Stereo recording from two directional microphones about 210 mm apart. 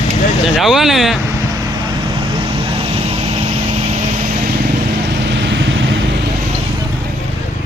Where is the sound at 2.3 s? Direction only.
25° right (ahead or behind).